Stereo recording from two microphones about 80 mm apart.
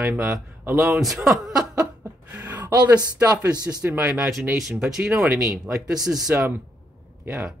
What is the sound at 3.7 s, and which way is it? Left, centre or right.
Speech, right.